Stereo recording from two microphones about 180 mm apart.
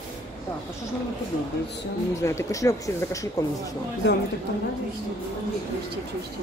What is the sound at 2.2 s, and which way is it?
Speech, 15° left (ahead or behind).